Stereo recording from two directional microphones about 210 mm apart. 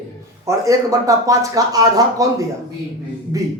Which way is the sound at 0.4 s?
15° right (ahead or behind).